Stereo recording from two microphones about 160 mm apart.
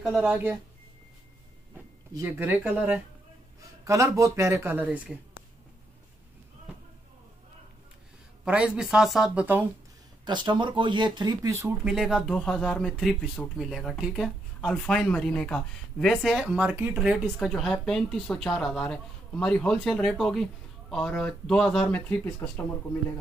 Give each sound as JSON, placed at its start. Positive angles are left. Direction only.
{"t": 0.0, "sound": "speech", "side_deg": 0}
{"t": 2.1, "sound": "speech", "side_deg": -10}
{"t": 8.5, "sound": "speech", "side_deg": -5}
{"t": 10.2, "sound": "speech", "side_deg": -30}
{"t": 11.8, "sound": "speech", "side_deg": -5}